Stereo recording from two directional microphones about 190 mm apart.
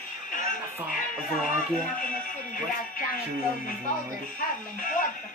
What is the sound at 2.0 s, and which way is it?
Music, 45° left (ahead or behind).